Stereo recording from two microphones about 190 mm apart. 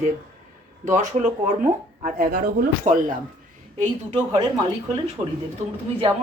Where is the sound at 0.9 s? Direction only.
40° right (ahead or behind).